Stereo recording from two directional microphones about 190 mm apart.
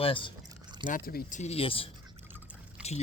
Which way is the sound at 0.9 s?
50° left (ahead or behind).